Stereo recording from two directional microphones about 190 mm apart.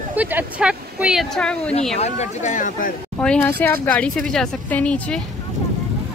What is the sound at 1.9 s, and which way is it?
Speech, 35° left (ahead or behind).